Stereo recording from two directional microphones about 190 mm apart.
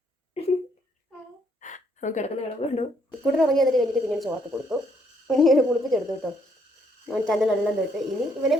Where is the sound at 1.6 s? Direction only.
40° left (ahead or behind).